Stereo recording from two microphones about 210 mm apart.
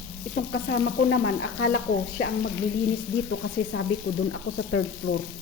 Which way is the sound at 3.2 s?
90° left.